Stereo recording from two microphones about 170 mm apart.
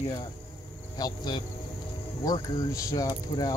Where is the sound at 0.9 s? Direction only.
25° left (ahead or behind).